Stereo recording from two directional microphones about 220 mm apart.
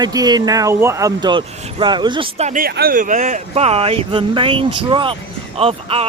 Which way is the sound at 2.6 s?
45° right (ahead or behind).